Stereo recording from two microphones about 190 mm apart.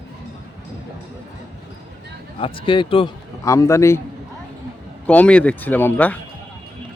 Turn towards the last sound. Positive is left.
turn(degrees=10)  # may be behind; listen again after turning